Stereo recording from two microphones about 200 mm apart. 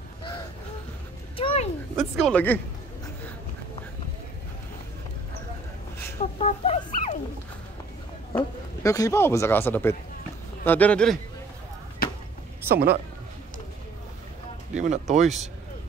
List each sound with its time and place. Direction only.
1.4 s a sound: 30° left (ahead or behind)
2.0 s speech: 5° left (ahead or behind)
6.3 s speech: 30° left (ahead or behind)
8.3 s speech: 20° left (ahead or behind)
12.6 s speech: 50° right (ahead or behind)
14.7 s speech: 35° right (ahead or behind)